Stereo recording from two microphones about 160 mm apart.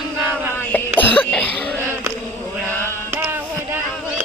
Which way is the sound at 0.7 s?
10° left (ahead or behind).